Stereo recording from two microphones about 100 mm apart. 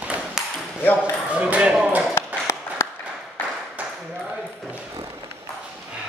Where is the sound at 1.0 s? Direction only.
10° right (ahead or behind).